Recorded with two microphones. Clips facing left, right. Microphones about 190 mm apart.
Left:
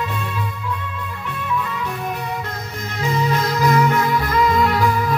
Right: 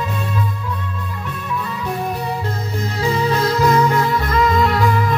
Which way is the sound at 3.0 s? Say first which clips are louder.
Right 2 dB; 30° right (ahead or behind).